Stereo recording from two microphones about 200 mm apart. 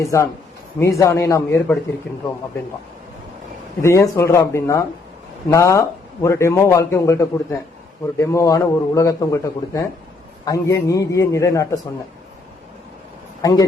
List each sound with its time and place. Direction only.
0.1 s a man's voice: 15° left (ahead or behind)
3.8 s a man's voice: 15° left (ahead or behind)
13.4 s a man's voice: 20° left (ahead or behind)